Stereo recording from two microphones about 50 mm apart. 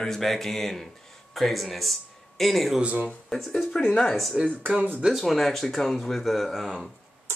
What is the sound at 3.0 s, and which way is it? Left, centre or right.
Speech, centre.